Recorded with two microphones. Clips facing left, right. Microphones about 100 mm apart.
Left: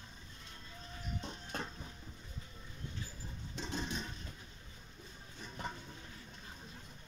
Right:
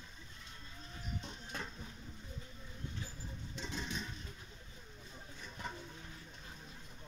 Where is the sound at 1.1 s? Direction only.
40° left (ahead or behind).